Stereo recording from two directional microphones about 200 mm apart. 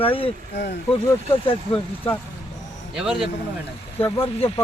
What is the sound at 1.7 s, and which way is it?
Speech, 30° left (ahead or behind).